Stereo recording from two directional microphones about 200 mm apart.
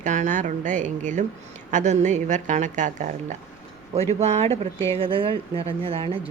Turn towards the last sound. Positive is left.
turn(degrees=-25)  # may be behind; listen again after turning